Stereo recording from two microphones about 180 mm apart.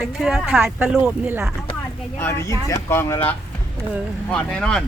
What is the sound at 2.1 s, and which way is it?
Speech, 15° left (ahead or behind).